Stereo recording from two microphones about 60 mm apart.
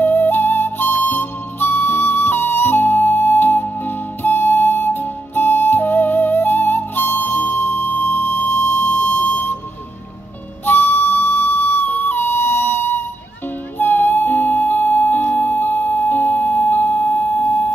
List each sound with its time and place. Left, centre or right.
0.0 s flute: left
10.6 s flute: left
13.7 s music: left